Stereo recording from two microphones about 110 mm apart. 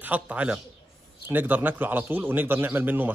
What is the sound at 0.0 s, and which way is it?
Speech, 15° right (ahead or behind).